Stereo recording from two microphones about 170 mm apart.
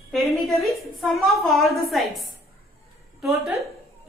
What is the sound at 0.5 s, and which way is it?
A woman's voice, centre (ahead or behind).